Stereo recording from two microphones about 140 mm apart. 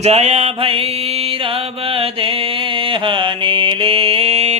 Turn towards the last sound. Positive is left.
turn(degrees=-50)  # may be behind; listen again after turning